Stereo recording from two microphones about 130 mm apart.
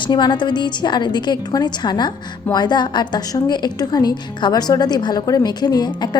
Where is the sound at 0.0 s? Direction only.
35° left (ahead or behind).